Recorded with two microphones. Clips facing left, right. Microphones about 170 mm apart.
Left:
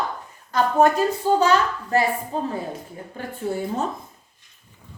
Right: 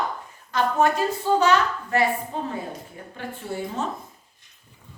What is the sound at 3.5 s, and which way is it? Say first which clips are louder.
Speech: left 5 dB; 50° left (ahead or behind).